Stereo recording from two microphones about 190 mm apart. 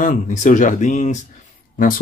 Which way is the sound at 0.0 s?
40° left (ahead or behind).